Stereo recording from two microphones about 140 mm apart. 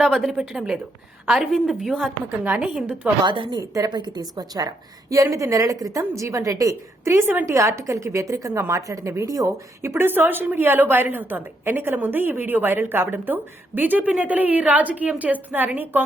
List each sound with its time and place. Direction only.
0.0 s a woman's voice: centre (ahead or behind)
3.2 s a woman's voice: 35° right (ahead or behind); by 16.0 s 15° right (ahead or behind)